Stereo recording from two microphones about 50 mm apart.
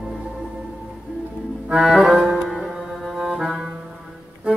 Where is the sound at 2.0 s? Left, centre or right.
Centre.